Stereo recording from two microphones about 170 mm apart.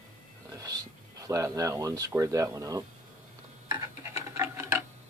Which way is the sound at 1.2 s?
20° right (ahead or behind).